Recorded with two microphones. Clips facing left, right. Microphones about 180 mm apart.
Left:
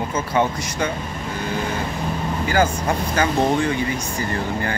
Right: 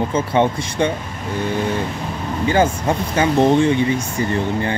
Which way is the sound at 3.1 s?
25° right (ahead or behind).